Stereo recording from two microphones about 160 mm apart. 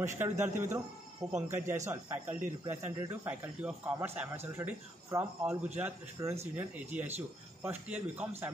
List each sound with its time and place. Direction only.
0.0 s a man's voice: 15° right (ahead or behind)